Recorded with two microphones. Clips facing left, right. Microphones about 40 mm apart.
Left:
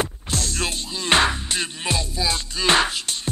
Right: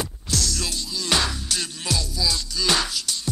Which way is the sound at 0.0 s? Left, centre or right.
Left.